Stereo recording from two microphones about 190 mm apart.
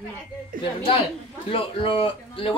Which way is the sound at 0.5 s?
45° right (ahead or behind).